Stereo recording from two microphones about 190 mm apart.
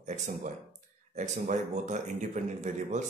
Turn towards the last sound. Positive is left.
turn(degrees=-40)  # may be behind; listen again after turning